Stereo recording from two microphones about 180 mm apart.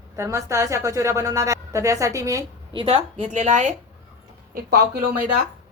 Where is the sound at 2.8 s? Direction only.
35° right (ahead or behind).